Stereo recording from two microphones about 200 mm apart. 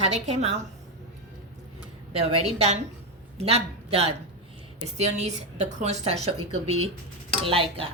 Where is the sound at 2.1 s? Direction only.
30° right (ahead or behind).